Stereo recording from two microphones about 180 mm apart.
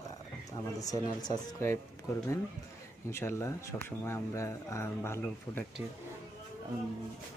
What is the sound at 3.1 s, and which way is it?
Speech, 15° left (ahead or behind).